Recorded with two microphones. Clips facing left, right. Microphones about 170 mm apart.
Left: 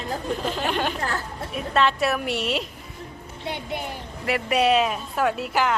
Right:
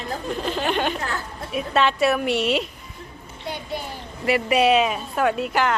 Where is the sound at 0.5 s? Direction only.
Centre (ahead or behind).